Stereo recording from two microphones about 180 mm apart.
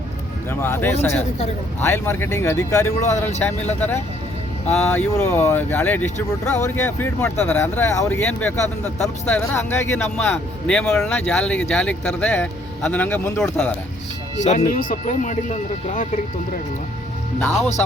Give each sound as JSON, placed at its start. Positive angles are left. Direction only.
{"t": 0.6, "sound": "speech", "side_deg": 15}
{"t": 0.9, "sound": "speech", "side_deg": 40}
{"t": 1.8, "sound": "speech", "side_deg": 15}
{"t": 14.7, "sound": "speech", "side_deg": 50}